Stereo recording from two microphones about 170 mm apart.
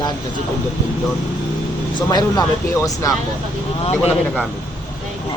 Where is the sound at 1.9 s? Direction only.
20° left (ahead or behind).